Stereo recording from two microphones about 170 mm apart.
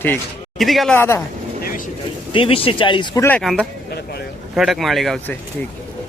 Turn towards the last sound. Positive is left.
turn(degrees=0)  # may be behind; listen again after turning